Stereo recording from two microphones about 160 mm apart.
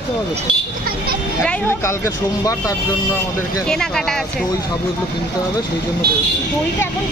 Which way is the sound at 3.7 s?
5° left (ahead or behind).